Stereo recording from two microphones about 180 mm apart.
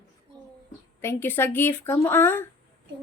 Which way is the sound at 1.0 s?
15° left (ahead or behind).